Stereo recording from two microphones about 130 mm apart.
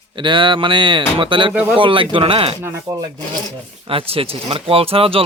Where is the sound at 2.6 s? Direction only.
20° right (ahead or behind).